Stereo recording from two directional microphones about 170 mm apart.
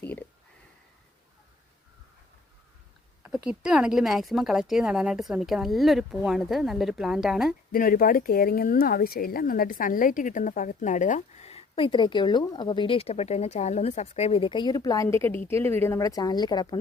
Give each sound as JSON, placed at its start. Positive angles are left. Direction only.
{"t": 0.0, "sound": "a sound", "side_deg": 10}
{"t": 3.6, "sound": "a woman's voice", "side_deg": -5}
{"t": 7.7, "sound": "speech", "side_deg": 55}